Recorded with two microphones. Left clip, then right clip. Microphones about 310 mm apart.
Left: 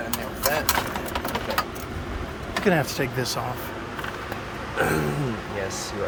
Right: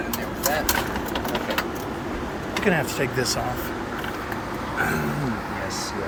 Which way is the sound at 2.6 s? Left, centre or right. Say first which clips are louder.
Even; centre.